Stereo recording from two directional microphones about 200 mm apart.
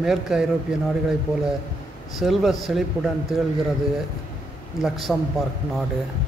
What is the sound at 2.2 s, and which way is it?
A man's voice, centre (ahead or behind).